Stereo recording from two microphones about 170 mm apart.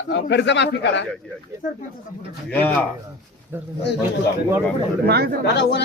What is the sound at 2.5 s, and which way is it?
Speech, 10° left (ahead or behind).